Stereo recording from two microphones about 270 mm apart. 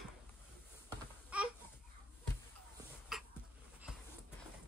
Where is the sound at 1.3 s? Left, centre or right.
Centre.